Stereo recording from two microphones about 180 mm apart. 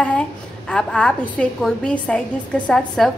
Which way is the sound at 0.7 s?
5° left (ahead or behind).